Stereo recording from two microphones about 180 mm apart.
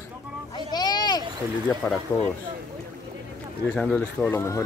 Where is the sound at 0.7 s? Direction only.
25° left (ahead or behind).